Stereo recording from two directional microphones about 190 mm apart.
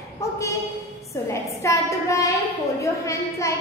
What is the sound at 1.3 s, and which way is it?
A woman's voice, 15° left (ahead or behind).